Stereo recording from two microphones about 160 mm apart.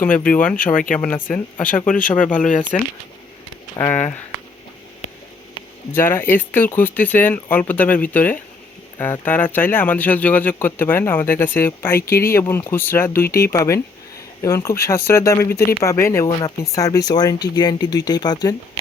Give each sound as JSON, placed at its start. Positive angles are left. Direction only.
{"t": 0.7, "sound": "speech", "side_deg": 55}
{"t": 0.9, "sound": "speech", "side_deg": 10}
{"t": 2.4, "sound": "speech", "side_deg": 50}
{"t": 3.8, "sound": "speech", "side_deg": 15}
{"t": 5.9, "sound": "speech", "side_deg": 15}